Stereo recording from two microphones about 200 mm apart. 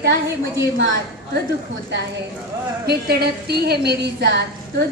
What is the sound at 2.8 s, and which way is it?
A woman's voice, 55° right (ahead or behind).